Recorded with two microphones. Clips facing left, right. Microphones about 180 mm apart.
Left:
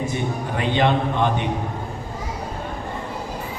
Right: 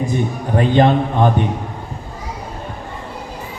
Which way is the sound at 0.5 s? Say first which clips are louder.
Right 7 dB; 40° right (ahead or behind).